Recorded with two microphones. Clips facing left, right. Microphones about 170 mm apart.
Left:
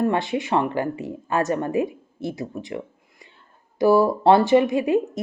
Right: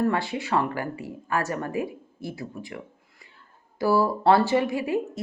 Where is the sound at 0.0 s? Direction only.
20° left (ahead or behind).